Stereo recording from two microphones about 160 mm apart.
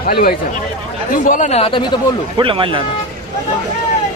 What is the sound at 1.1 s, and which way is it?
Speech, 55° left (ahead or behind).